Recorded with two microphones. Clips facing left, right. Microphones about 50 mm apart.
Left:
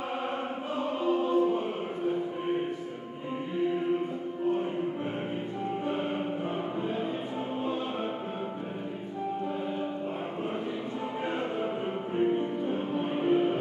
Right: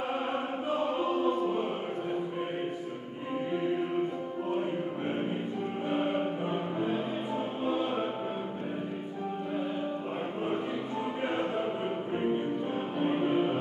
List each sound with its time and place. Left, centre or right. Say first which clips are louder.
6.5 s music: right 1 dB; centre
12.6 s music: even; centre